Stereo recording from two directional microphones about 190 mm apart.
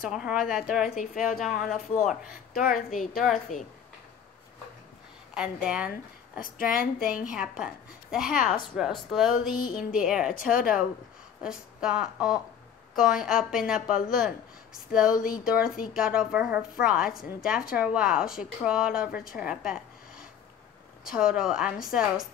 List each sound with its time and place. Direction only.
0.1 s a woman's voice: 5° right (ahead or behind)
0.9 s a woman's voice: 45° left (ahead or behind)
1.3 s a woman's voice: centre (ahead or behind)
2.5 s a woman's voice: 50° left (ahead or behind)
3.2 s a woman's voice: centre (ahead or behind)
5.3 s a woman's voice: 5° right (ahead or behind)
6.4 s a woman's voice: 45° left (ahead or behind)
7.1 s a woman's voice: 5° right (ahead or behind)
10.5 s a woman's voice: 50° left (ahead or behind)
11.4 s a woman's voice: 5° right (ahead or behind)
19.3 s a sound: 5° right (ahead or behind)
21.0 s a woman's voice: 5° right (ahead or behind)